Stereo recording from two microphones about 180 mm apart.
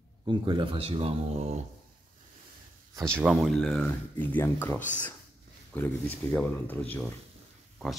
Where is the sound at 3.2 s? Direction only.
Centre (ahead or behind).